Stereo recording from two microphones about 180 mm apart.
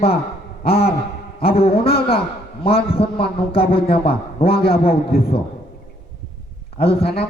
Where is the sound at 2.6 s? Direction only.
30° left (ahead or behind).